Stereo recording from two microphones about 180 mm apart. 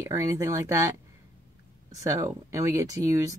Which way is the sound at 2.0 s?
15° right (ahead or behind).